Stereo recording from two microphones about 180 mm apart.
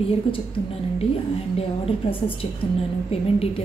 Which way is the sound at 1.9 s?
30° left (ahead or behind).